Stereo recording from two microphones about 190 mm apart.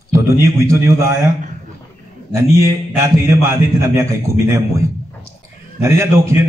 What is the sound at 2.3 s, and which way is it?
A man's voice, 15° right (ahead or behind).